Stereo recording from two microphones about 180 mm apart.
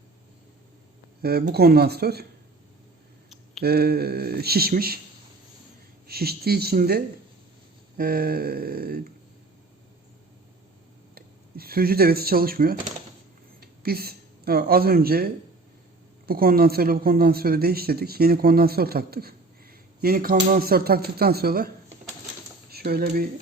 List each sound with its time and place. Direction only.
1.2 s speech: 60° right (ahead or behind)
3.6 s speech: 60° right (ahead or behind)
6.1 s speech: 60° right (ahead or behind)
11.1 s a woman's voice: 55° right (ahead or behind)
22.7 s speech: 55° right (ahead or behind)